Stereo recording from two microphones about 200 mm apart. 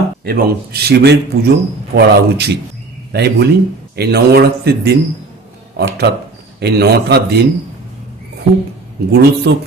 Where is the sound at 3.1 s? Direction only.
55° right (ahead or behind).